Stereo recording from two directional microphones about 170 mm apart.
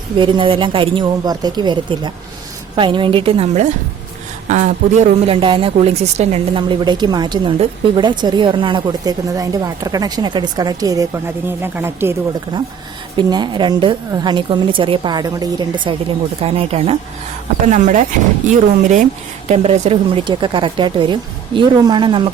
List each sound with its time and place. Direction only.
0.2 s speech: 30° right (ahead or behind)
13.1 s speech: 25° right (ahead or behind)
17.7 s speech: 45° right (ahead or behind)
19.5 s speech: 40° right (ahead or behind)